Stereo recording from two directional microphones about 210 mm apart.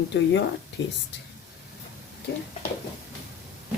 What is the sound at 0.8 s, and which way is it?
Dishes, 65° left (ahead or behind).